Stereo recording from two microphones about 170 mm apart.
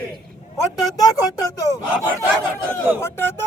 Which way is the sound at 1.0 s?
20° left (ahead or behind).